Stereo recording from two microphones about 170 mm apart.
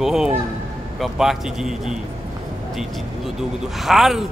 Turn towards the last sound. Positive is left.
turn(degrees=0)  # may be behind; listen again after turning